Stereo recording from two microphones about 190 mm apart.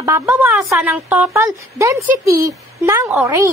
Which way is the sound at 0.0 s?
15° right (ahead or behind).